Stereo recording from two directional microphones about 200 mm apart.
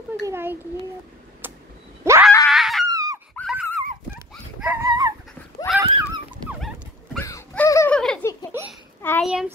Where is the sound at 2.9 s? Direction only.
20° right (ahead or behind).